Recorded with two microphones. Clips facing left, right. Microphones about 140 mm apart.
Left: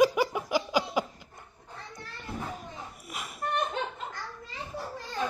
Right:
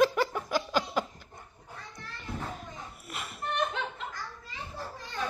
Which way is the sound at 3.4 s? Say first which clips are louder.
Left 3 dB; 45° left (ahead or behind).